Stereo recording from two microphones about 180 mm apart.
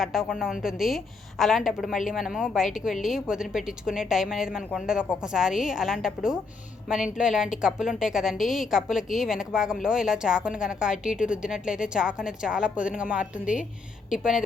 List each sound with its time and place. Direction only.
0.0 s a woman's voice: centre (ahead or behind)